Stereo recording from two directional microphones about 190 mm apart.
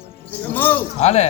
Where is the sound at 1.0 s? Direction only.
35° left (ahead or behind).